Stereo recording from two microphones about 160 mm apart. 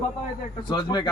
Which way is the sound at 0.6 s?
30° left (ahead or behind).